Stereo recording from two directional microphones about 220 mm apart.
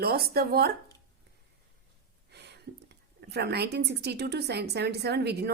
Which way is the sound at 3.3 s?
50° right (ahead or behind).